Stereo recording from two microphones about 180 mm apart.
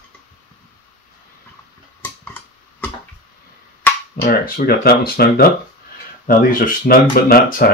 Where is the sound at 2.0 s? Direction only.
10° left (ahead or behind).